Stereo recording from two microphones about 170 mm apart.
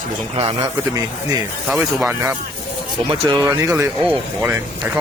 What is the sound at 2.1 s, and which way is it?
Speech, 15° right (ahead or behind).